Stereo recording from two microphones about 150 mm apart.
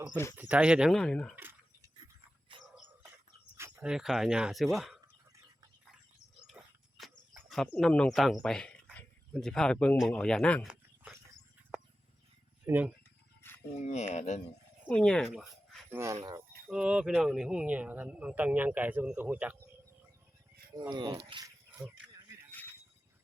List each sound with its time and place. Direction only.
0.3 s speech: 10° right (ahead or behind); by 1.4 s 5° left (ahead or behind)
1.4 s drip: 15° right (ahead or behind)
3.8 s speech: 5° right (ahead or behind)
6.5 s a sound: centre (ahead or behind)
7.5 s speech: 5° left (ahead or behind)
10.7 s a sound: 10° right (ahead or behind)
12.6 s speech: 10° right (ahead or behind)
13.7 s speech: 45° left (ahead or behind)
14.8 s speech: 5° left (ahead or behind)
15.9 s speech: 15° right (ahead or behind)
16.6 s speech: 5° right (ahead or behind)
20.9 s speech: 30° right (ahead or behind)